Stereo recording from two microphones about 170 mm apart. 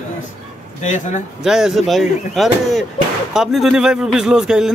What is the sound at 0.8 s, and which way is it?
Speech, 45° left (ahead or behind).